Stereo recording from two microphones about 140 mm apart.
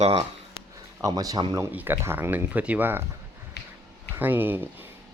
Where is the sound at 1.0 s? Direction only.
25° right (ahead or behind).